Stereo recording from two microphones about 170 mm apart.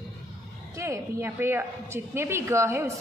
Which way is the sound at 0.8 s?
15° right (ahead or behind).